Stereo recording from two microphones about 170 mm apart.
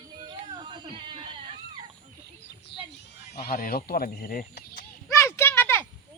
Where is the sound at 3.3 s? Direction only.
65° left (ahead or behind).